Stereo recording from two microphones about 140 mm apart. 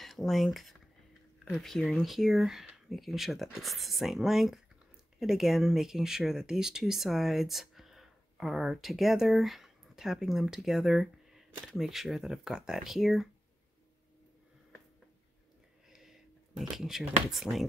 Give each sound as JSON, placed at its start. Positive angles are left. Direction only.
{"t": 0.0, "sound": "speech", "side_deg": 0}
{"t": 15.9, "sound": "a sound", "side_deg": 0}
{"t": 17.3, "sound": "speech", "side_deg": 0}